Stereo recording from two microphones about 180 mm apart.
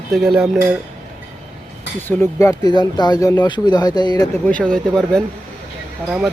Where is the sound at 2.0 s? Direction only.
15° left (ahead or behind).